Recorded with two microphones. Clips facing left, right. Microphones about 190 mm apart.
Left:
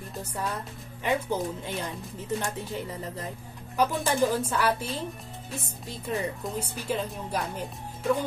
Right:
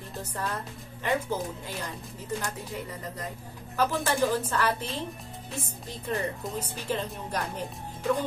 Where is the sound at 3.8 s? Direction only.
15° left (ahead or behind).